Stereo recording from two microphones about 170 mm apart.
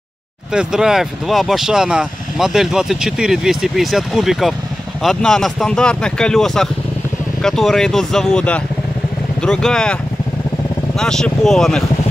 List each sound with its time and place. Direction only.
0.5 s speech: 5° right (ahead or behind)
11.0 s speech: 5° left (ahead or behind)